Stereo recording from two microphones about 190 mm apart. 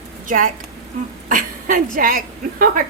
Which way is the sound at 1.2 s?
45° right (ahead or behind).